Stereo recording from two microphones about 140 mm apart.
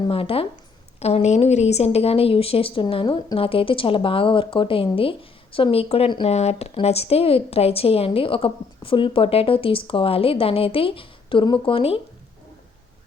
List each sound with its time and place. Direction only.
0.0 s speech: 40° left (ahead or behind)
6.2 s speech: 50° left (ahead or behind)